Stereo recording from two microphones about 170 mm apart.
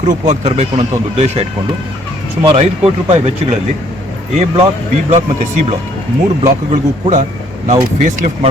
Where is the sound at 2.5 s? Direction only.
40° right (ahead or behind).